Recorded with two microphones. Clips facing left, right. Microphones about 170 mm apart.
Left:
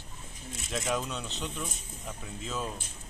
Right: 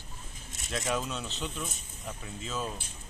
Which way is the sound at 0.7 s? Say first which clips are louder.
Even; centre (ahead or behind).